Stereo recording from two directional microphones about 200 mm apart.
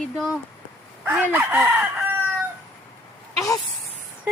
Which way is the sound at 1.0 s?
10° right (ahead or behind).